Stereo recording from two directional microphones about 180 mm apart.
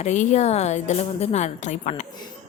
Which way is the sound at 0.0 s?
40° left (ahead or behind).